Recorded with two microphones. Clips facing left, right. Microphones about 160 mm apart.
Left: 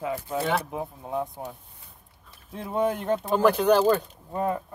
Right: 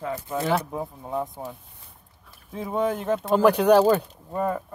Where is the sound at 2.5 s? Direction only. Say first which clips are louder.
Right 1 dB; centre (ahead or behind).